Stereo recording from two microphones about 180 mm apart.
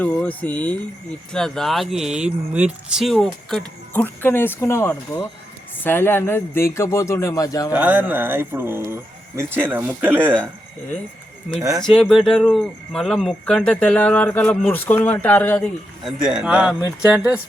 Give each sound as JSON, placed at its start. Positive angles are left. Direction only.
{"t": 0.0, "sound": "speech", "side_deg": 10}
{"t": 3.9, "sound": "speech", "side_deg": 10}
{"t": 7.7, "sound": "speech", "side_deg": -10}
{"t": 11.8, "sound": "speech", "side_deg": 0}
{"t": 16.0, "sound": "speech", "side_deg": -5}